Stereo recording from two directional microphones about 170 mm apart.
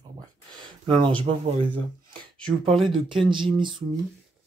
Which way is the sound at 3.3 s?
30° right (ahead or behind).